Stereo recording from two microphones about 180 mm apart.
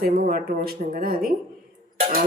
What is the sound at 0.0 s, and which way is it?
Speech, 55° right (ahead or behind).